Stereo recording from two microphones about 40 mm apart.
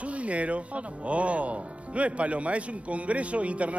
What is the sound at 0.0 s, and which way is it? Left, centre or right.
Speech, right.